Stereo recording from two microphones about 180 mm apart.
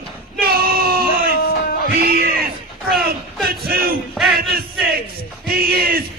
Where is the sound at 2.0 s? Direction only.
60° right (ahead or behind).